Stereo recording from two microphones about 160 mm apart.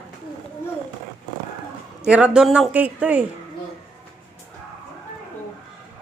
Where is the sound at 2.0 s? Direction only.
5° right (ahead or behind).